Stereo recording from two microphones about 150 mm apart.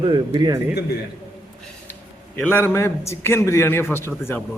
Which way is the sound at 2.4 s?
15° left (ahead or behind).